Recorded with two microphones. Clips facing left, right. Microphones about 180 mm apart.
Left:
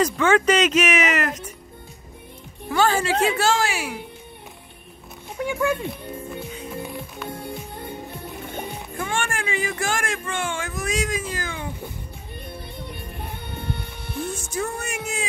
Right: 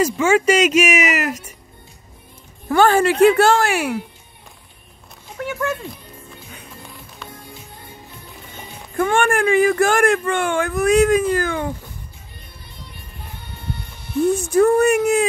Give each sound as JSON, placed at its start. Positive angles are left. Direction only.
{"t": 0.0, "sound": "speech", "side_deg": -10}
{"t": 2.7, "sound": "speech", "side_deg": -55}
{"t": 5.4, "sound": "speech", "side_deg": 15}
{"t": 7.2, "sound": "music", "side_deg": 60}
{"t": 8.9, "sound": "speech", "side_deg": -55}
{"t": 13.2, "sound": "music", "side_deg": 60}
{"t": 14.3, "sound": "speech", "side_deg": -60}